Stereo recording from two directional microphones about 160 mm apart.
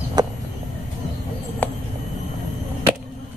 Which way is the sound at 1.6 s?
10° left (ahead or behind).